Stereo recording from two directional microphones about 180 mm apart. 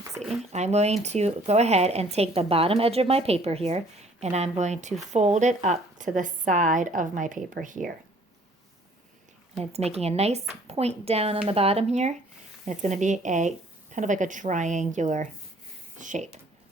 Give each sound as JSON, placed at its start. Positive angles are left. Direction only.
{"t": 0.2, "sound": "speech", "side_deg": -40}
{"t": 9.6, "sound": "speech", "side_deg": -35}